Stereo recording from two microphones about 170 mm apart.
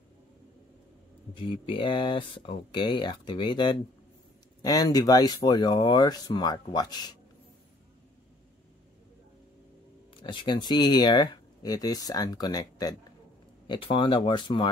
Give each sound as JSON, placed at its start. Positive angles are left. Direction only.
{"t": 1.3, "sound": "speech", "side_deg": 30}
{"t": 10.1, "sound": "speech", "side_deg": 30}